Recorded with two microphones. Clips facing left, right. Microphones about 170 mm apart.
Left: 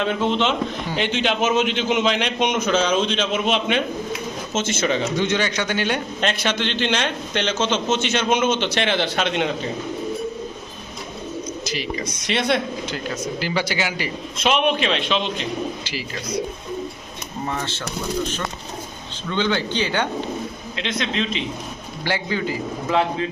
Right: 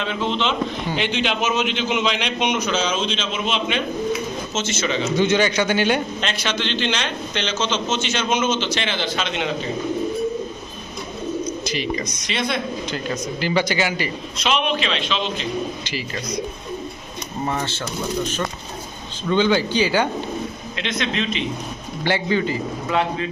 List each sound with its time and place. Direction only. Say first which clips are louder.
0.0 s a man's voice: left 3 dB; 50° left (ahead or behind)
5.1 s a man's voice: right 4 dB; 5° right (ahead or behind)
6.1 s a man's voice: left 2 dB; 50° left (ahead or behind)
11.6 s speech: right 2 dB; 5° left (ahead or behind)
12.3 s speech: left 4 dB; 70° left (ahead or behind)
13.4 s speech: right 4 dB; 10° left (ahead or behind)
14.3 s a man's voice: left 3 dB; 55° left (ahead or behind)
15.8 s speech: right 2 dB; 10° left (ahead or behind)
19.3 s speech: right 4 dB; 10° right (ahead or behind)
20.8 s a man's voice: even; 30° left (ahead or behind)
22.0 s a man's voice: right 3 dB; centre (ahead or behind)